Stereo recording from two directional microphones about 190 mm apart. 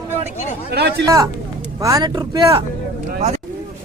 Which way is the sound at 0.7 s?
60° right (ahead or behind).